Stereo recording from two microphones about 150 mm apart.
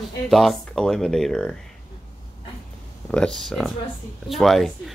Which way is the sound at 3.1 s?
5° left (ahead or behind).